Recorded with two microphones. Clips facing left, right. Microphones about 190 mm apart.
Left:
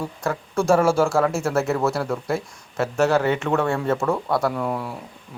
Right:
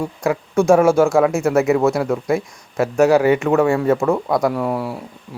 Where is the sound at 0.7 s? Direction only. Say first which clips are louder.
Right 5 dB; 10° right (ahead or behind).